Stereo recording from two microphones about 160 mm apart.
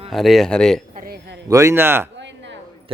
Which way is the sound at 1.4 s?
20° right (ahead or behind).